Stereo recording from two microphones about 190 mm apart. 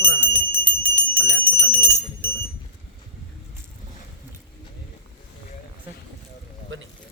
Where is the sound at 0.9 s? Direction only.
10° left (ahead or behind).